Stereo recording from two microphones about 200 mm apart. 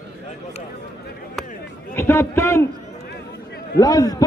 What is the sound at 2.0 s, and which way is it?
Speech, 15° left (ahead or behind).